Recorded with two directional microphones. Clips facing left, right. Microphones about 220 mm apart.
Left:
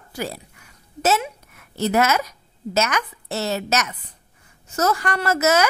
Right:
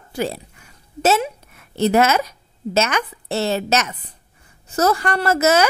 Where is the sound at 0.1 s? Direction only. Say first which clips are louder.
Right 5 dB; 25° right (ahead or behind).